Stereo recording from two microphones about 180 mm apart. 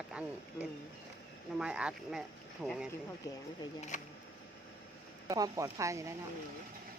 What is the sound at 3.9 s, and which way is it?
Speech, 40° left (ahead or behind).